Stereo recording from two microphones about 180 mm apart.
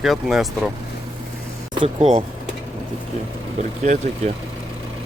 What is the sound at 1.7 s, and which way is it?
Speech, 25° right (ahead or behind).